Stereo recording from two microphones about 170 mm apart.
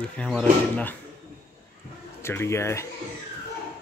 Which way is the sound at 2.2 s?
15° left (ahead or behind).